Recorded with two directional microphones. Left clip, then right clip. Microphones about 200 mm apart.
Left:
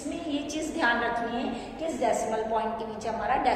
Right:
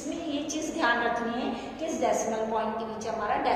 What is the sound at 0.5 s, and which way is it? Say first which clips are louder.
Speech: left 1 dB; 20° left (ahead or behind).